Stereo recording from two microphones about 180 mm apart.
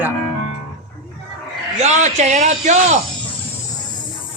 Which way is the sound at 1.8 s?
40° right (ahead or behind).